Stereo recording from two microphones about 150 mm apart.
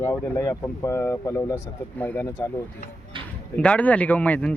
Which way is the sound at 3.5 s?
10° left (ahead or behind).